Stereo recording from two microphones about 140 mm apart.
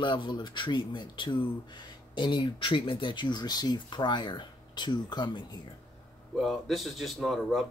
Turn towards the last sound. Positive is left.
turn(degrees=0)  # may be behind; listen again after turning